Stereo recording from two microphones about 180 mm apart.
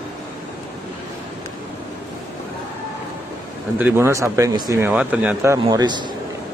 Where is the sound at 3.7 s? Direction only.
10° right (ahead or behind).